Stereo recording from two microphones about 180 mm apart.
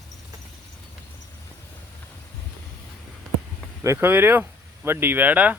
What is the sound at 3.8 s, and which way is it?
Speech, 15° right (ahead or behind).